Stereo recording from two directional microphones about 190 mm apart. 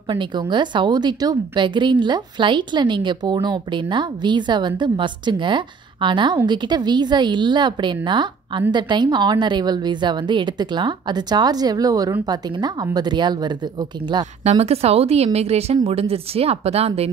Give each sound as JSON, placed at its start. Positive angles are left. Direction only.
{"t": 0.1, "sound": "a woman's voice", "side_deg": -25}
{"t": 14.4, "sound": "a woman's voice", "side_deg": -35}